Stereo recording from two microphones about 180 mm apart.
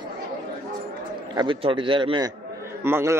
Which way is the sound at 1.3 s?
25° right (ahead or behind).